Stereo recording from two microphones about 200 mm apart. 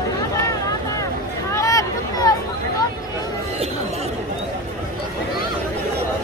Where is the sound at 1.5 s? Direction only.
15° left (ahead or behind).